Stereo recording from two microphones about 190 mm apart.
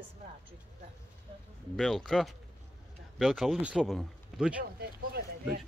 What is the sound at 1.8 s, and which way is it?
A man's voice, centre (ahead or behind).